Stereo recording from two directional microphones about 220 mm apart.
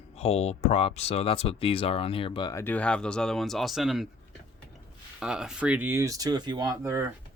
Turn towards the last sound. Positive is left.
turn(degrees=-10)  # may be behind; listen again after turning